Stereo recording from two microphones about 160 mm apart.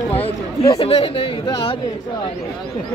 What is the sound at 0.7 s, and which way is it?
Speech, 35° left (ahead or behind).